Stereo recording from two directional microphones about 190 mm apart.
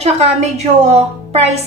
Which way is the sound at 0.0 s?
35° right (ahead or behind).